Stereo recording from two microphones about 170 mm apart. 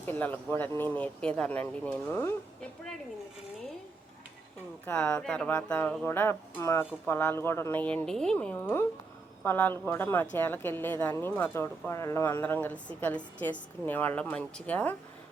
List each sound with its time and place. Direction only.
0.0 s a woman's voice: 10° left (ahead or behind)
4.9 s a woman's voice: 10° left (ahead or behind)